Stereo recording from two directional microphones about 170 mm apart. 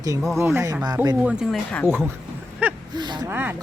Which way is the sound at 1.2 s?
5° right (ahead or behind).